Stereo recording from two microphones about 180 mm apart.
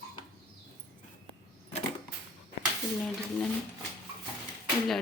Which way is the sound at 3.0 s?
5° left (ahead or behind).